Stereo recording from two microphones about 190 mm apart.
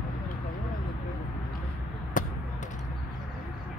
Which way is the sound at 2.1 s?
45° left (ahead or behind).